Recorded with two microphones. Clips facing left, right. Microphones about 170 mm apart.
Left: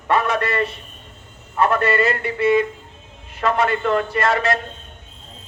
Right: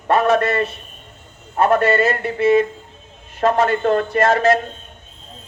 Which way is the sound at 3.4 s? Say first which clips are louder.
Right 3 dB; 30° right (ahead or behind).